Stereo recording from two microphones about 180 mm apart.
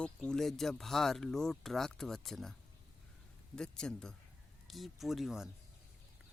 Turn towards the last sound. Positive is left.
turn(degrees=0)  # may be behind; listen again after turning